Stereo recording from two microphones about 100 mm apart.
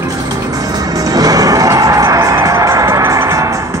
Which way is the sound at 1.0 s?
35° right (ahead or behind).